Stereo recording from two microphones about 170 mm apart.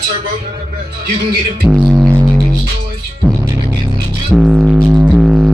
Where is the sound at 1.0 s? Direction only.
65° right (ahead or behind).